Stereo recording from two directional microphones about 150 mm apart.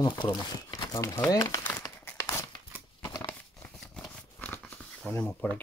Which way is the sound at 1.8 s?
20° left (ahead or behind).